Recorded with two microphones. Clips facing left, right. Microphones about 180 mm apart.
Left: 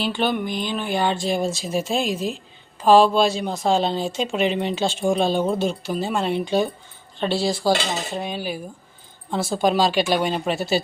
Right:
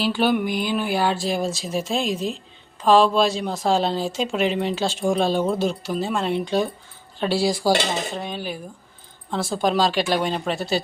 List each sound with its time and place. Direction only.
0.0 s speech: 5° right (ahead or behind)
8.1 s speech: 5° left (ahead or behind)